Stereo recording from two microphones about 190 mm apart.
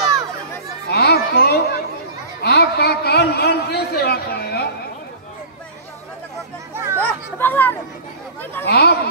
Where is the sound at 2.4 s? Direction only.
60° left (ahead or behind).